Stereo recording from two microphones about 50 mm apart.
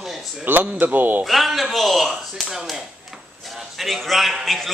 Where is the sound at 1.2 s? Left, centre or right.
Centre.